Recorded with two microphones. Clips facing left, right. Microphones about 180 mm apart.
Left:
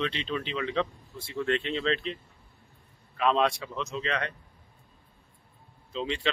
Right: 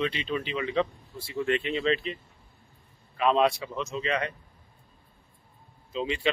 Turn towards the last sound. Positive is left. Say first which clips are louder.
# right 2 dB
turn(degrees=-5)  # may be behind; listen again after turning